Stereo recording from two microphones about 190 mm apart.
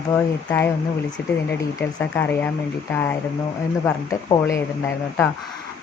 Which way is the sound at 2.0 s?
10° left (ahead or behind).